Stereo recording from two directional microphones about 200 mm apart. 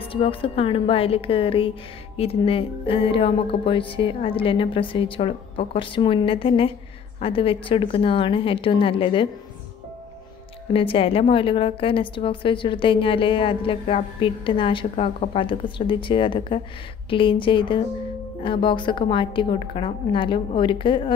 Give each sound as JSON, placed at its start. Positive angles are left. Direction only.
{"t": 0.0, "sound": "a woman's voice", "side_deg": 30}
{"t": 10.7, "sound": "a woman's voice", "side_deg": 25}